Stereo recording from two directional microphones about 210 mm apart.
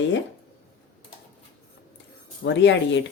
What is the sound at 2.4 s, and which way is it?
Speech, 60° left (ahead or behind).